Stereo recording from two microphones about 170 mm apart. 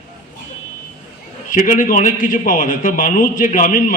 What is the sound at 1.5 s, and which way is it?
A man's voice, 50° left (ahead or behind).